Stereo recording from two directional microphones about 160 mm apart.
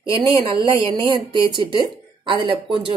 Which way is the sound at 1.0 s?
30° right (ahead or behind).